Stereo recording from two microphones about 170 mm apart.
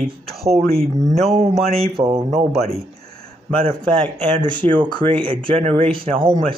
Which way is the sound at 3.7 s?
25° right (ahead or behind).